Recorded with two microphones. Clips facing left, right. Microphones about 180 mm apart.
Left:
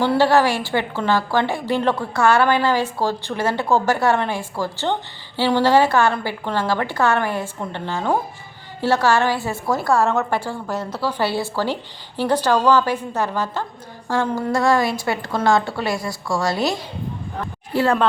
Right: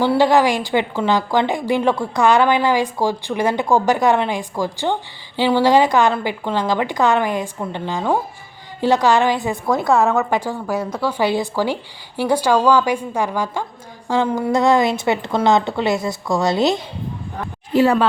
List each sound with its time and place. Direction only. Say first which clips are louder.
0.0 s a woman's voice: right 2 dB; 15° right (ahead or behind)
10.7 s a woman's voice: right 3 dB; 5° left (ahead or behind)
11.2 s a woman's voice: right 4 dB; 15° right (ahead or behind)